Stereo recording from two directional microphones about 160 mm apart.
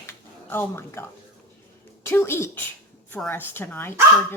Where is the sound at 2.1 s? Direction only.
15° left (ahead or behind).